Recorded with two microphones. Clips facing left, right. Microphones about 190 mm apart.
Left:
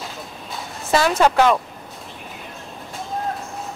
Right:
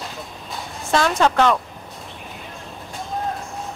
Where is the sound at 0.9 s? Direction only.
5° left (ahead or behind).